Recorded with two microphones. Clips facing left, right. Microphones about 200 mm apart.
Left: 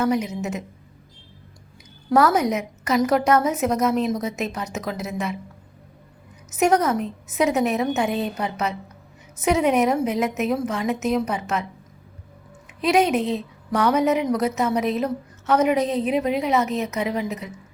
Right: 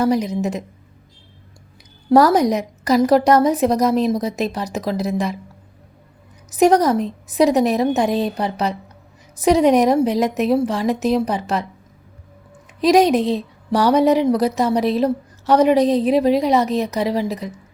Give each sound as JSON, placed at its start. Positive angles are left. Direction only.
{"t": 0.0, "sound": "a woman's voice", "side_deg": -35}
{"t": 2.0, "sound": "a woman's voice", "side_deg": -35}
{"t": 6.5, "sound": "a woman's voice", "side_deg": -35}
{"t": 12.8, "sound": "a woman's voice", "side_deg": -35}